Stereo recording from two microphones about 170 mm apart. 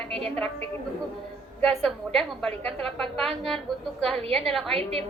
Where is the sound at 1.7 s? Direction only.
Centre (ahead or behind).